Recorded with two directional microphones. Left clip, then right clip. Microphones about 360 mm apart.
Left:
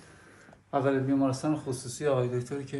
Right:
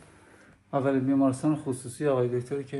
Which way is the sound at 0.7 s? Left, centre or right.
Right.